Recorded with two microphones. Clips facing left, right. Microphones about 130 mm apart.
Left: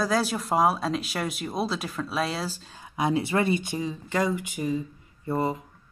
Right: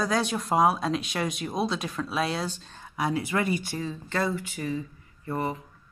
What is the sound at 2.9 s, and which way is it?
Speech, 25° left (ahead or behind).